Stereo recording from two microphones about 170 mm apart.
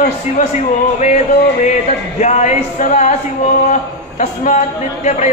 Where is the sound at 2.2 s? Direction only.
45° left (ahead or behind).